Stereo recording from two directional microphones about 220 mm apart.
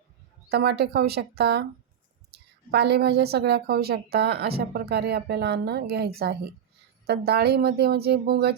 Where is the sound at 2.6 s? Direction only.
50° right (ahead or behind).